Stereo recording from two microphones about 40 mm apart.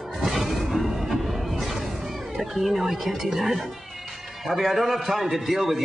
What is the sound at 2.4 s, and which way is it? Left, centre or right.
A man's voice, centre.